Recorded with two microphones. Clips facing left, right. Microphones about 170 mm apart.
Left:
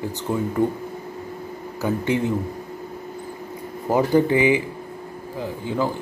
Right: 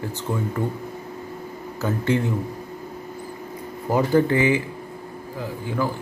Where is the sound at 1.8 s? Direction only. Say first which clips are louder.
Even; 15° left (ahead or behind).